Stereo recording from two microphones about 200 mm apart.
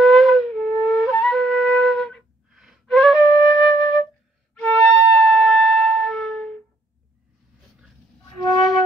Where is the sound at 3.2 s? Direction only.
20° left (ahead or behind).